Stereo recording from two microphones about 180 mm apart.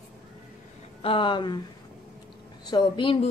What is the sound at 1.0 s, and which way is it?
Speech, 30° left (ahead or behind).